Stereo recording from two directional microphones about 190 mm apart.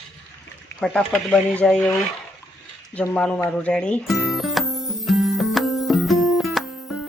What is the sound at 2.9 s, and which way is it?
Music, 5° left (ahead or behind).